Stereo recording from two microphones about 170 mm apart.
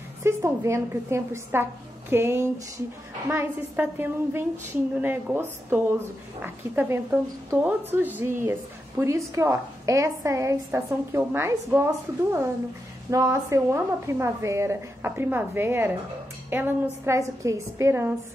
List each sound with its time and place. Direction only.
0.2 s a woman's voice: 15° right (ahead or behind)